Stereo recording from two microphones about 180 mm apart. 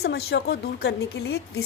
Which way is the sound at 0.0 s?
65° left (ahead or behind).